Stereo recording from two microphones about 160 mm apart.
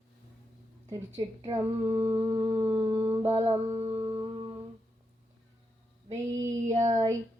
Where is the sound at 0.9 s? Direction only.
15° right (ahead or behind).